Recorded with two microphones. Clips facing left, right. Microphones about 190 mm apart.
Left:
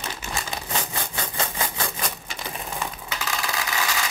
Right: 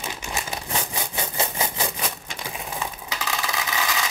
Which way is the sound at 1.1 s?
20° right (ahead or behind).